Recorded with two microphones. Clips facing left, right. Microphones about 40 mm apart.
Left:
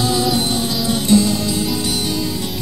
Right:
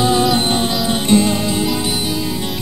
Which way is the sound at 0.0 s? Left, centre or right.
Right.